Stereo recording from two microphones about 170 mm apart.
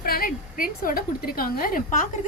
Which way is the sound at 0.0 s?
60° left (ahead or behind).